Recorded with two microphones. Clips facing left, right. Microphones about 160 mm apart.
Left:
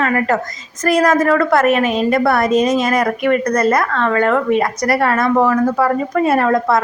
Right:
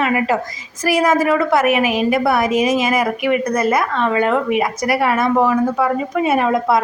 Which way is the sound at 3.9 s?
15° right (ahead or behind).